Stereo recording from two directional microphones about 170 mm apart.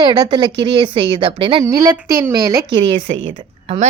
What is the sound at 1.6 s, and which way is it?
Speech, 20° right (ahead or behind).